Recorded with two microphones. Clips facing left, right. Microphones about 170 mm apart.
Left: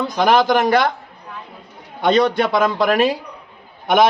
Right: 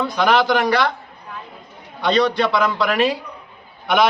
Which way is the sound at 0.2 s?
45° left (ahead or behind).